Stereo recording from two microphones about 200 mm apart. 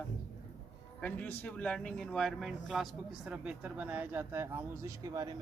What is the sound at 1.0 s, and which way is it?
A man's voice, 10° left (ahead or behind).